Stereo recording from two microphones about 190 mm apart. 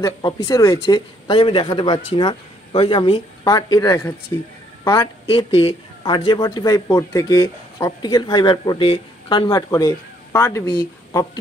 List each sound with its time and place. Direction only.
0.0 s speech: 20° left (ahead or behind)